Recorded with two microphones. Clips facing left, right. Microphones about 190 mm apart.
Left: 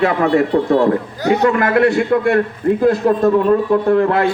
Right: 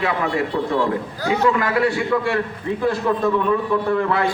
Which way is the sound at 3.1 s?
40° left (ahead or behind).